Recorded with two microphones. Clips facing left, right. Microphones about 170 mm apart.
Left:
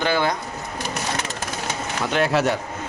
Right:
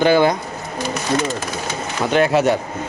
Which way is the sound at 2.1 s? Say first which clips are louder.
Right 5 dB; centre (ahead or behind).